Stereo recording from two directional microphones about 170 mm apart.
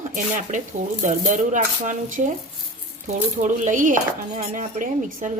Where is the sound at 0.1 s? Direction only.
50° right (ahead or behind).